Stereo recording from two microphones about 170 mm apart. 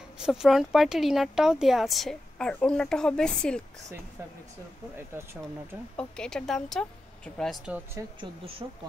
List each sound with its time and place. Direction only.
0.2 s speech: 5° right (ahead or behind)
4.9 s speech: 15° right (ahead or behind)
5.9 s speech: 5° left (ahead or behind)
8.2 s speech: 30° right (ahead or behind)